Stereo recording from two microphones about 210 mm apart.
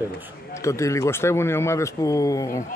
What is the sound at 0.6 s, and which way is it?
Speech, 15° left (ahead or behind).